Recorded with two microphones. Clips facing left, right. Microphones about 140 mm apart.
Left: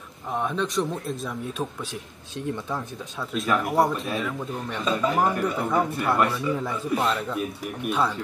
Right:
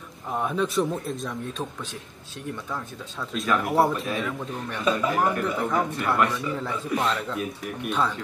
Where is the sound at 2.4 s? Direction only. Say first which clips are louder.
Left 3 dB; 25° left (ahead or behind).